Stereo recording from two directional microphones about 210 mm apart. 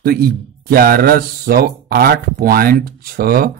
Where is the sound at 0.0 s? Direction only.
45° right (ahead or behind).